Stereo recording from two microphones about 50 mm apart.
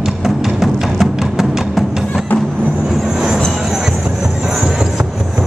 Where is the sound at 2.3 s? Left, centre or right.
Left.